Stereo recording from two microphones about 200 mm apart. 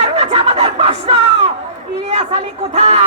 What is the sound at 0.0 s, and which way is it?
Music, 30° right (ahead or behind).